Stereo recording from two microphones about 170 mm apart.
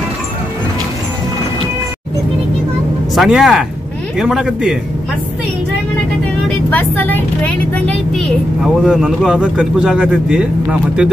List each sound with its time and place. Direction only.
3.2 s a woman's voice: 5° right (ahead or behind)
6.5 s a woman's voice: 10° left (ahead or behind); by 11.1 s 5° right (ahead or behind)